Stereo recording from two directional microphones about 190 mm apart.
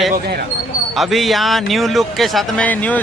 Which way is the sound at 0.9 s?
Centre (ahead or behind).